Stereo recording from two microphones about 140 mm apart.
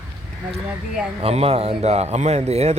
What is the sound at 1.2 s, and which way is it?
Speech, 45° right (ahead or behind).